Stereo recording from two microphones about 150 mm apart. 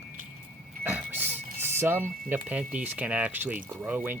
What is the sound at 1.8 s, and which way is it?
Speech, 15° right (ahead or behind).